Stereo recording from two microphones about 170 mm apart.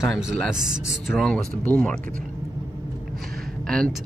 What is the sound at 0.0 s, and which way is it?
Speech, centre (ahead or behind).